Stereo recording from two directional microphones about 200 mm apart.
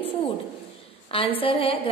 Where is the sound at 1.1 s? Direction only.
25° left (ahead or behind).